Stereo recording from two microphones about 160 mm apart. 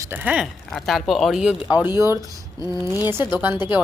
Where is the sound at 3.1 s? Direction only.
15° right (ahead or behind).